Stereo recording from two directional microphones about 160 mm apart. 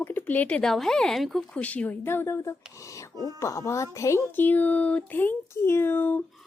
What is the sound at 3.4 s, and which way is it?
Speech, 15° left (ahead or behind).